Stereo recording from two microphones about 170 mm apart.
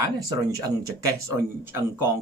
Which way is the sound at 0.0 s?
20° right (ahead or behind).